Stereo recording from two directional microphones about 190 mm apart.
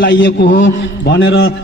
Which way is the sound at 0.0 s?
70° left (ahead or behind).